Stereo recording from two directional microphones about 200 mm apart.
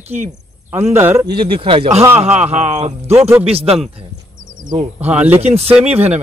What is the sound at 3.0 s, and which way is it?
Speech, 10° right (ahead or behind).